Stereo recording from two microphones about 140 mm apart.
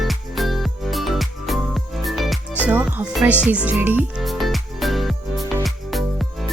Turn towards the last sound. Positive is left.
turn(degrees=0)  # may be behind; listen again after turning